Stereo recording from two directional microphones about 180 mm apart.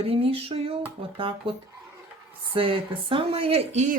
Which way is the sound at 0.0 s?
35° right (ahead or behind).